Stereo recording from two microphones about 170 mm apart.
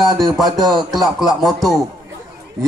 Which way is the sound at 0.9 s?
Centre (ahead or behind).